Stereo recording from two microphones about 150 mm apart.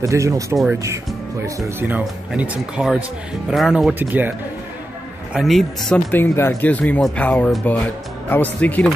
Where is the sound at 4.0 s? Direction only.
10° right (ahead or behind).